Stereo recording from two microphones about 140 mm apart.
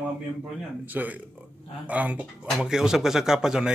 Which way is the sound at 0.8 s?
10° right (ahead or behind).